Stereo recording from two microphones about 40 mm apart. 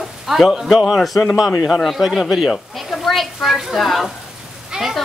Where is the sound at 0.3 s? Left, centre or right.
Centre.